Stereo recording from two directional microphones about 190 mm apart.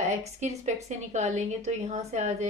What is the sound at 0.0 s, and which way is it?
A woman's voice, 35° right (ahead or behind).